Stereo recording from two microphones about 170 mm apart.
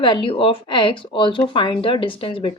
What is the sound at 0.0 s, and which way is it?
A woman's voice, 30° left (ahead or behind).